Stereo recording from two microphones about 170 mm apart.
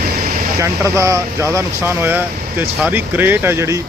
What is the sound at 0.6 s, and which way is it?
Speech, 20° right (ahead or behind).